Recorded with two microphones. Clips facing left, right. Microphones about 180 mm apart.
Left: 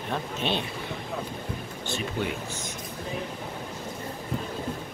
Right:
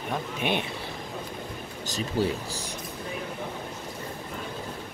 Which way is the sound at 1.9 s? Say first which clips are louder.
Right 3 dB; 35° right (ahead or behind).